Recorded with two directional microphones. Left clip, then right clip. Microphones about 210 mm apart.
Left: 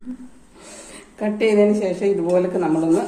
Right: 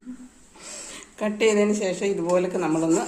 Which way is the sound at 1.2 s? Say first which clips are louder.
Left 4 dB; 25° right (ahead or behind).